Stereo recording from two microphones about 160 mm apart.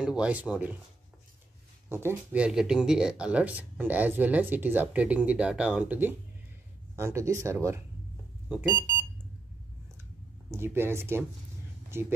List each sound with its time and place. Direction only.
0.0 s speech: 5° right (ahead or behind)
1.9 s speech: 15° right (ahead or behind)
10.5 s speech: 15° right (ahead or behind)